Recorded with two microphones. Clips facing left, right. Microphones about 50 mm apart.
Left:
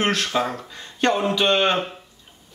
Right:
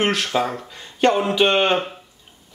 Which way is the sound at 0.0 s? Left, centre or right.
Centre.